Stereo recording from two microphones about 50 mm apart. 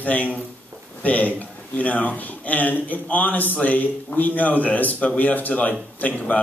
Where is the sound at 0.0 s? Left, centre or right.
Left.